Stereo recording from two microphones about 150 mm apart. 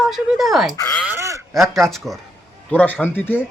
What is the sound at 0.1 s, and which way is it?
Speech, centre (ahead or behind).